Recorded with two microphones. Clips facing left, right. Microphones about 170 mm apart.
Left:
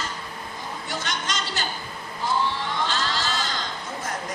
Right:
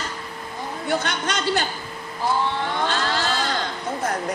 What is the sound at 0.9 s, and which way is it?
Speech, 60° right (ahead or behind).